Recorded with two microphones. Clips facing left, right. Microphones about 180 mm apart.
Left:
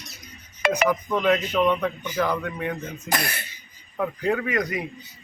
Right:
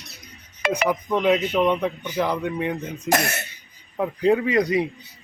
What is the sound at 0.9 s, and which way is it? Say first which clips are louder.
Music: right 5 dB; 20° right (ahead or behind).